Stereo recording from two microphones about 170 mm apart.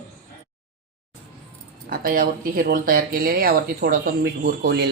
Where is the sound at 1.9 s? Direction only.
60° right (ahead or behind).